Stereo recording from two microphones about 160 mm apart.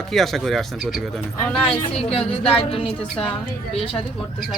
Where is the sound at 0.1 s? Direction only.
Centre (ahead or behind).